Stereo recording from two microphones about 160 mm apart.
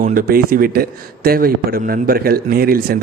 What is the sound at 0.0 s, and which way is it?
A man's voice, 60° right (ahead or behind).